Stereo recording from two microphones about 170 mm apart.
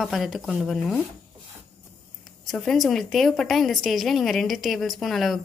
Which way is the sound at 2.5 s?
Centre (ahead or behind).